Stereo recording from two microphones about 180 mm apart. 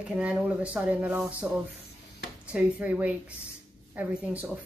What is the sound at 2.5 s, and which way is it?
Speech, 5° right (ahead or behind).